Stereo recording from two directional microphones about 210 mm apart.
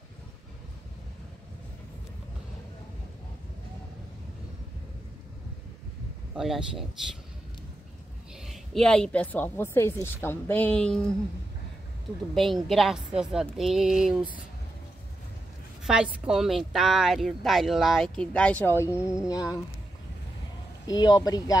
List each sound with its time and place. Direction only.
6.3 s a woman's voice: centre (ahead or behind)
8.5 s speech: centre (ahead or behind)
12.6 s a woman's voice: centre (ahead or behind)
15.8 s a woman's voice: 5° right (ahead or behind); by 19.6 s 15° left (ahead or behind)
20.8 s speech: 20° left (ahead or behind)